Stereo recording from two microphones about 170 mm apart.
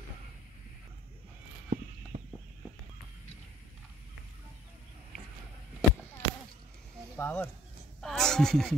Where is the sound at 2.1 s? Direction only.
55° right (ahead or behind).